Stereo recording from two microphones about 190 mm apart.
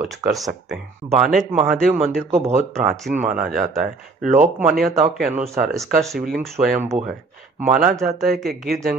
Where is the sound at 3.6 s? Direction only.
40° right (ahead or behind).